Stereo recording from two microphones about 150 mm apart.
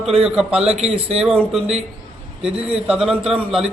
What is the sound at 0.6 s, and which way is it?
Speech, 40° right (ahead or behind).